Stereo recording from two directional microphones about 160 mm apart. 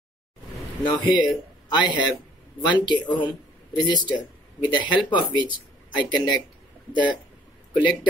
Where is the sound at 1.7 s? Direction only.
25° left (ahead or behind).